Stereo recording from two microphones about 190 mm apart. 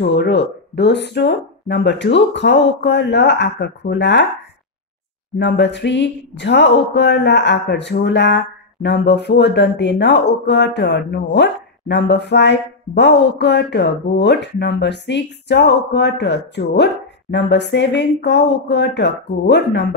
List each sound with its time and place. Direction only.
0.0 s speech: 65° left (ahead or behind)
5.4 s speech: 65° left (ahead or behind)